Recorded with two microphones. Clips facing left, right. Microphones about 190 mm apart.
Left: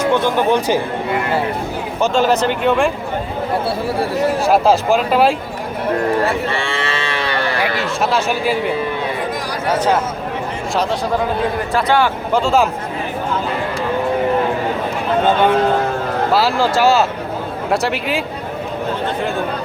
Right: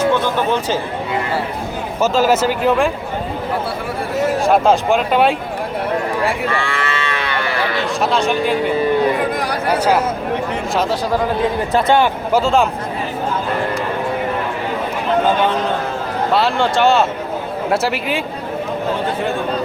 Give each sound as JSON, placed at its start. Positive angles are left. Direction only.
{"t": 0.3, "sound": "speech", "side_deg": 15}
{"t": 2.0, "sound": "speech", "side_deg": -5}
{"t": 4.4, "sound": "speech", "side_deg": 5}
{"t": 6.5, "sound": "cattle", "side_deg": 25}
{"t": 8.1, "sound": "speech", "side_deg": 5}
{"t": 11.7, "sound": "a man's voice", "side_deg": -20}
{"t": 12.3, "sound": "speech", "side_deg": 0}
{"t": 16.3, "sound": "speech", "side_deg": 0}